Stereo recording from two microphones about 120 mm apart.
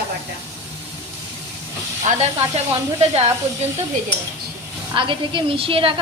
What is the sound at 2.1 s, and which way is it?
Speech, 90° right.